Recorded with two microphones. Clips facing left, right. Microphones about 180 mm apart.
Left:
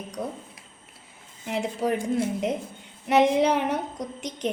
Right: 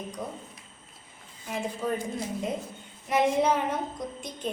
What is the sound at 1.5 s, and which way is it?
A woman's voice, 75° left (ahead or behind).